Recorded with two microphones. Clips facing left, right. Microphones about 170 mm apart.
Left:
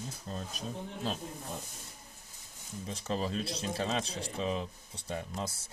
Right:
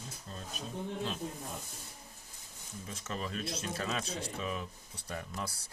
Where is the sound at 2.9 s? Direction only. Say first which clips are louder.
Left 5 dB; 30° left (ahead or behind).